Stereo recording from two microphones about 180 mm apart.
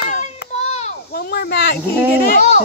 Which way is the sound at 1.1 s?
60° left (ahead or behind).